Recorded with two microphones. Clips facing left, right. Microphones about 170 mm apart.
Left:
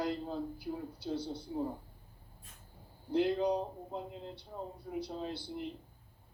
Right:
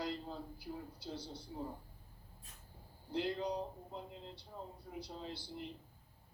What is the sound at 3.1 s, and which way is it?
A man's voice, 60° left (ahead or behind).